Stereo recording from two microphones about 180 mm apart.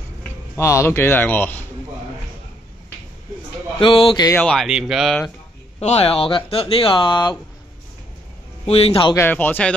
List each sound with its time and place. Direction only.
0.2 s speech: 15° left (ahead or behind)
3.8 s speech: 30° left (ahead or behind)
4.3 s speech: 5° left (ahead or behind)
5.8 s speech: 35° left (ahead or behind)
8.6 s speech: 35° left (ahead or behind)
9.1 s speech: 10° left (ahead or behind)